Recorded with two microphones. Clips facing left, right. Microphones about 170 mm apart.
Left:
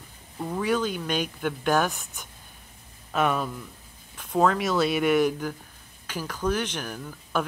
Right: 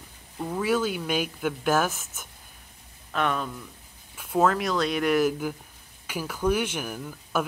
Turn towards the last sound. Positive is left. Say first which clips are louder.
# even
turn(degrees=-5)  # may be behind; listen again after turning